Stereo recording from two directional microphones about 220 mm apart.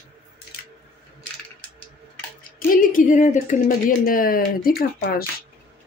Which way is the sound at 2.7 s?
40° left (ahead or behind).